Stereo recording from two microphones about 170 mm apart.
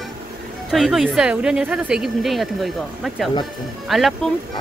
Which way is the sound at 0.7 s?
Centre (ahead or behind).